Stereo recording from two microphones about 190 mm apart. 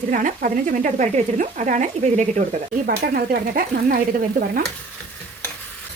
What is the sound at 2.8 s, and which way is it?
Speech, 50° right (ahead or behind).